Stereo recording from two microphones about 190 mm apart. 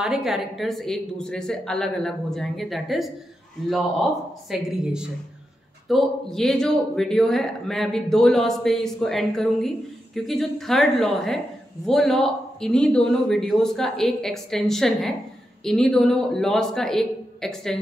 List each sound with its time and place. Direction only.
0.0 s a woman's voice: centre (ahead or behind)